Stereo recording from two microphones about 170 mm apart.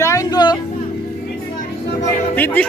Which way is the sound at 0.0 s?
20° left (ahead or behind).